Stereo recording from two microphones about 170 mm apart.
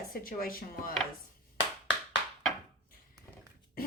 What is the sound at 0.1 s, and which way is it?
Speech, 60° left (ahead or behind).